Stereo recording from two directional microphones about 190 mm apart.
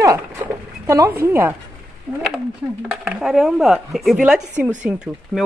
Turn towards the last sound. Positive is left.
turn(degrees=-5)  # may be behind; listen again after turning